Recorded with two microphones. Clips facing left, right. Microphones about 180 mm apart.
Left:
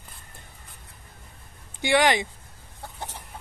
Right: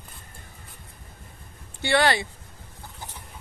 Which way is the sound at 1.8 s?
15° left (ahead or behind).